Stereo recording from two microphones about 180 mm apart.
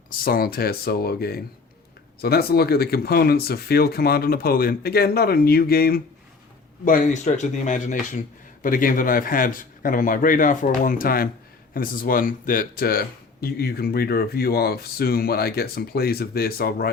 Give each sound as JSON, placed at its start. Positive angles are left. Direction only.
{"t": 0.1, "sound": "a man's voice", "side_deg": 55}